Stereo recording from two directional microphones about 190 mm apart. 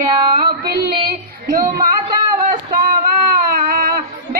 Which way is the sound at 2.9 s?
45° right (ahead or behind).